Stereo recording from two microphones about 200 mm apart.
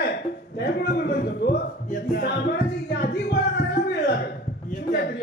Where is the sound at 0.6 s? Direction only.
55° left (ahead or behind).